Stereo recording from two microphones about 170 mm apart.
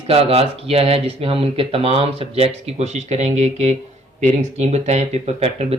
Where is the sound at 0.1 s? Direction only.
35° right (ahead or behind).